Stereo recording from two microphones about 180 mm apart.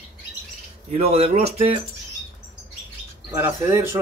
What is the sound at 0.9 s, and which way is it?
Speech, 35° right (ahead or behind).